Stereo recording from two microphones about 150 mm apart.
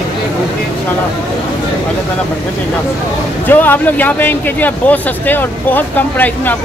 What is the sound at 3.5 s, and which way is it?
Speech, 10° left (ahead or behind).